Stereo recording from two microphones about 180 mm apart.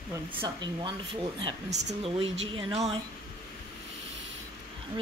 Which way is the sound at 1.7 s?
35° right (ahead or behind).